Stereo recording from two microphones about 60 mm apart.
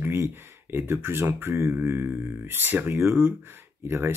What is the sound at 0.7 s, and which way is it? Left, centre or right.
Speech, right.